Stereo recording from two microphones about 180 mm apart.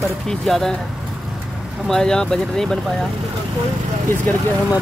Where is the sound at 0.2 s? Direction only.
Centre (ahead or behind).